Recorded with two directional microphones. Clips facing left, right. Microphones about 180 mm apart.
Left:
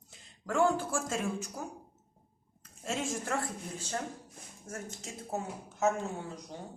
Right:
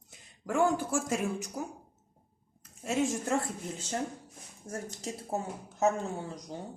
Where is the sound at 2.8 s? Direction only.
15° right (ahead or behind).